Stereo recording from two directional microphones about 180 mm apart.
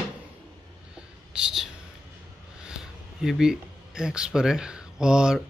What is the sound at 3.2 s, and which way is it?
Speech, 5° right (ahead or behind).